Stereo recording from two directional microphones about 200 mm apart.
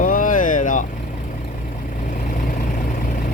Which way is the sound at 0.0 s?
40° left (ahead or behind).